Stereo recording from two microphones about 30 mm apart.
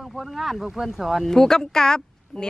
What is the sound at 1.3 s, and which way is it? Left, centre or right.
Speech, centre.